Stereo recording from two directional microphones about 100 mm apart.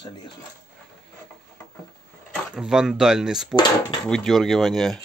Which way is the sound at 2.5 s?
5° right (ahead or behind).